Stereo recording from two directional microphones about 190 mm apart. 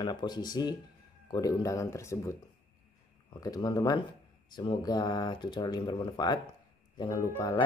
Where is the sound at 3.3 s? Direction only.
20° left (ahead or behind).